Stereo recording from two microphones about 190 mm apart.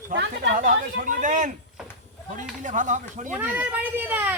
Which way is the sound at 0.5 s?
45° right (ahead or behind).